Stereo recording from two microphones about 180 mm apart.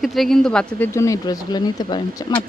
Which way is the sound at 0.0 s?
Centre (ahead or behind).